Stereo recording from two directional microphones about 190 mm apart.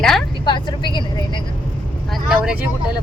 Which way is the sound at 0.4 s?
25° left (ahead or behind).